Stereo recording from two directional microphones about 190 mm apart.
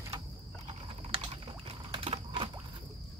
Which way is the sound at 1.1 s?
30° right (ahead or behind).